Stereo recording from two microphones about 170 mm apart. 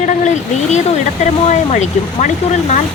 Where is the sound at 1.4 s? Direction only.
45° left (ahead or behind).